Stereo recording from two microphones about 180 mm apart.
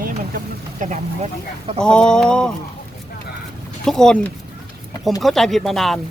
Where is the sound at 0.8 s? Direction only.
40° right (ahead or behind).